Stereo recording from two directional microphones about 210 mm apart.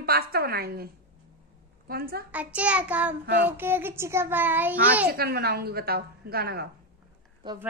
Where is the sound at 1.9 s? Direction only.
45° right (ahead or behind).